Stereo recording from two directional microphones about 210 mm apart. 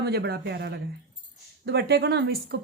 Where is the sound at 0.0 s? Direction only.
50° right (ahead or behind).